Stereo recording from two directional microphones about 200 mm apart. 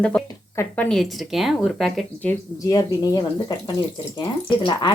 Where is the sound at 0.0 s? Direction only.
5° left (ahead or behind).